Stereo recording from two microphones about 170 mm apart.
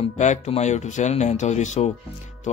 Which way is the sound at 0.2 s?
45° left (ahead or behind).